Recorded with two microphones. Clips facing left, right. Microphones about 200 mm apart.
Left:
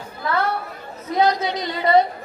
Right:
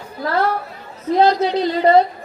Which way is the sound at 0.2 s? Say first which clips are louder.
Right 4 dB; 35° right (ahead or behind).